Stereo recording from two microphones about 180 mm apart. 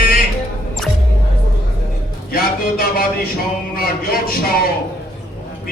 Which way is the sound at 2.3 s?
55° left (ahead or behind).